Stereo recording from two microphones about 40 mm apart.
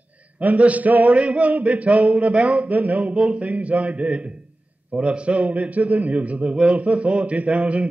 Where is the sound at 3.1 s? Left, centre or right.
Right.